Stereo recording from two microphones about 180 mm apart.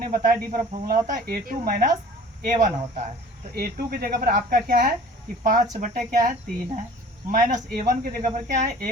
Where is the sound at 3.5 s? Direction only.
55° right (ahead or behind).